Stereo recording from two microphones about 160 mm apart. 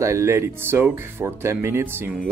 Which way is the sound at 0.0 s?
20° right (ahead or behind).